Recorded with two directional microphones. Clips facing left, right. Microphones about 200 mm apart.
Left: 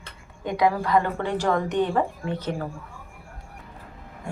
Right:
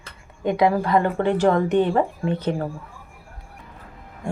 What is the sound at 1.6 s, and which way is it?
Speech, 55° right (ahead or behind).